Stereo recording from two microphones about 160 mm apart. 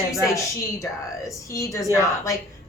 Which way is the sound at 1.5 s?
20° left (ahead or behind).